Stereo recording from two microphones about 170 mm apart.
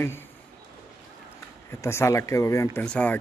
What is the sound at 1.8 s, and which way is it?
Speech, 15° left (ahead or behind).